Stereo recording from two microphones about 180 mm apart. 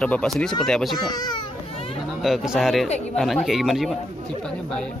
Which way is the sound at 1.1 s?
25° left (ahead or behind).